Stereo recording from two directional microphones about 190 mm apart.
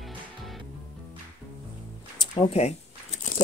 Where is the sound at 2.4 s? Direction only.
35° left (ahead or behind).